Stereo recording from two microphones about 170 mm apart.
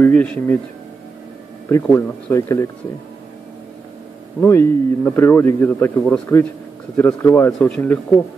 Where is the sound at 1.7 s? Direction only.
15° left (ahead or behind).